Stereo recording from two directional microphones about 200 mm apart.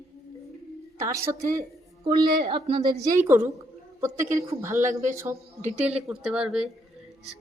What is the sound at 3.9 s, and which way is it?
A woman's voice, 15° right (ahead or behind).